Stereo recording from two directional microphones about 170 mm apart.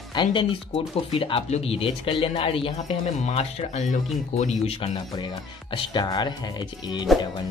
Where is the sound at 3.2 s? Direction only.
40° left (ahead or behind).